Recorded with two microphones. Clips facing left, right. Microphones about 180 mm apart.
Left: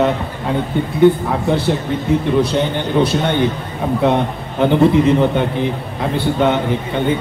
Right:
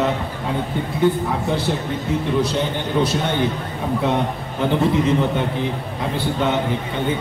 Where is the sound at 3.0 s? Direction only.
60° left (ahead or behind).